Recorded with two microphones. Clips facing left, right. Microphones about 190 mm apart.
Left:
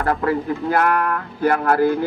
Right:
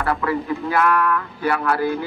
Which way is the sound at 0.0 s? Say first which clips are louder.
Left 2 dB; 45° left (ahead or behind).